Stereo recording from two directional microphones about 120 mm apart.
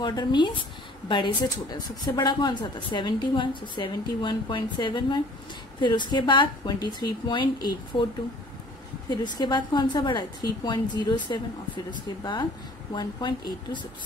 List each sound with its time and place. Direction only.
0.0 s speech: 35° left (ahead or behind)
9.1 s speech: 40° left (ahead or behind)